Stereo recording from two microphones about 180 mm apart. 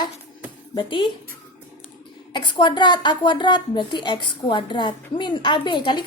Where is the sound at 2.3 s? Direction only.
25° left (ahead or behind).